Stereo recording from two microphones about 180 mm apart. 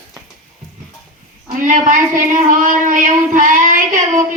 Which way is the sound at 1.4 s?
45° right (ahead or behind).